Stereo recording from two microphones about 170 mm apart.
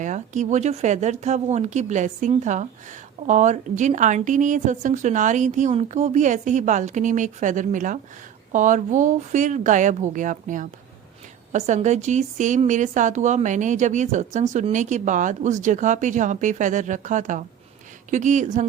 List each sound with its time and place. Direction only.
0.0 s a woman's voice: 45° right (ahead or behind)